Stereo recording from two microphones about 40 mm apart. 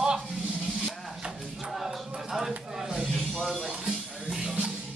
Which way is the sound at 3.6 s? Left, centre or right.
Right.